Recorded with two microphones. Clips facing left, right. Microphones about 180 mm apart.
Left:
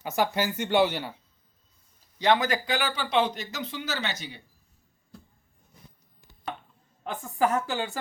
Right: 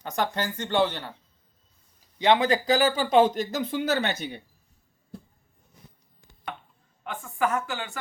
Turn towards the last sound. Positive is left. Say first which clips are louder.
# left 2 dB
turn(degrees=35)  # may be behind; listen again after turning